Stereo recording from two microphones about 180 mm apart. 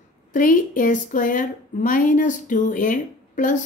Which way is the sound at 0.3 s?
50° left (ahead or behind).